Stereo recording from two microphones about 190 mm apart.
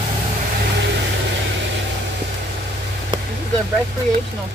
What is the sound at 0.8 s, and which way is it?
Vehicle, 65° right (ahead or behind).